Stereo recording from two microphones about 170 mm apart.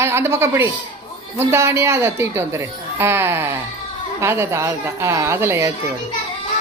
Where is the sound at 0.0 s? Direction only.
15° right (ahead or behind).